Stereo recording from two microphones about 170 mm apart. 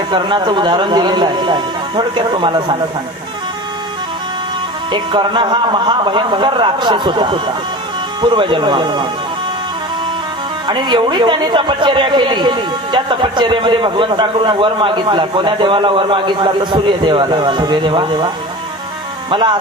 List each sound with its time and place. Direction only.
0.1 s speech: 30° right (ahead or behind)
4.9 s speech: 30° right (ahead or behind)
10.7 s speech: 25° right (ahead or behind)
19.3 s speech: 25° right (ahead or behind)